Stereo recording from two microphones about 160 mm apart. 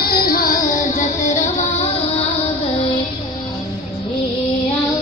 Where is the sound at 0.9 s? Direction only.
50° left (ahead or behind).